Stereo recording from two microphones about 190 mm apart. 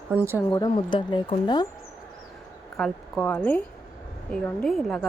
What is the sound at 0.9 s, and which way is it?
Speech, 25° left (ahead or behind).